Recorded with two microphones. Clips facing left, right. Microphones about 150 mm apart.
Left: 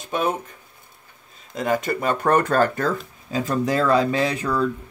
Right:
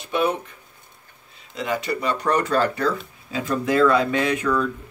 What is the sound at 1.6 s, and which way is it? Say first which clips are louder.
Speech: left 3 dB; 45° left (ahead or behind).